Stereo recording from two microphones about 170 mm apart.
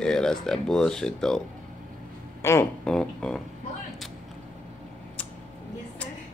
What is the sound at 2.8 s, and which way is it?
Speech, 5° left (ahead or behind).